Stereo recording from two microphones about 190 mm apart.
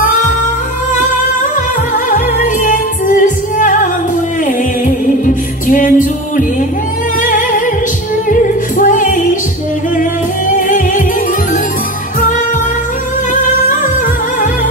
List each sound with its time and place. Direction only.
2.0 s music: 45° left (ahead or behind)
10.5 s music: 45° left (ahead or behind)
13.3 s music: 45° left (ahead or behind)